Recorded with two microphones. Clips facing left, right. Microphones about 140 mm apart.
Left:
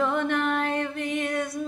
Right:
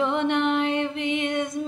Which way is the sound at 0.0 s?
25° right (ahead or behind).